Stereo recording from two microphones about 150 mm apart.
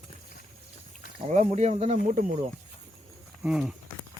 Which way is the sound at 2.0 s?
60° right (ahead or behind).